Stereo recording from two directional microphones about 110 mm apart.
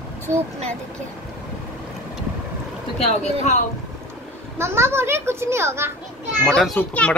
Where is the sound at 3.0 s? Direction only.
75° left (ahead or behind).